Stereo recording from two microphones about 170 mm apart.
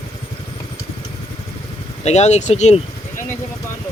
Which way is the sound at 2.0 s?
40° left (ahead or behind).